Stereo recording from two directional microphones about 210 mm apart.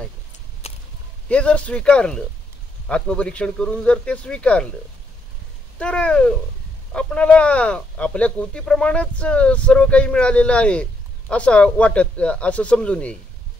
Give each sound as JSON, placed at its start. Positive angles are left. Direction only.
{"t": 0.6, "sound": "a sound", "side_deg": 30}
{"t": 1.3, "sound": "speech", "side_deg": 5}
{"t": 5.8, "sound": "speech", "side_deg": 5}